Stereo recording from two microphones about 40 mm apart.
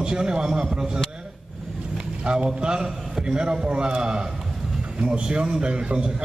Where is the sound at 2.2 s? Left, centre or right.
Right.